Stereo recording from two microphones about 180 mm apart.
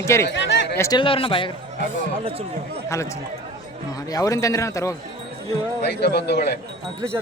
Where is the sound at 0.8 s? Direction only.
25° left (ahead or behind).